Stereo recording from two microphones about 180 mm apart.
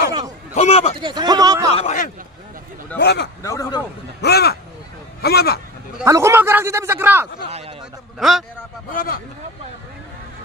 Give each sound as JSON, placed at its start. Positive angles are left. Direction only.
{"t": 0.6, "sound": "a man's voice", "side_deg": 35}
{"t": 1.0, "sound": "speech", "side_deg": -20}
{"t": 1.8, "sound": "a man's voice", "side_deg": 40}
{"t": 3.0, "sound": "a man's voice", "side_deg": 65}
{"t": 3.4, "sound": "a man's voice", "side_deg": 20}
{"t": 4.2, "sound": "speech", "side_deg": 65}
{"t": 6.0, "sound": "a man's voice", "side_deg": -15}
{"t": 7.4, "sound": "speech", "side_deg": -35}
{"t": 8.2, "sound": "a man's voice", "side_deg": 0}
{"t": 8.9, "sound": "speech", "side_deg": 55}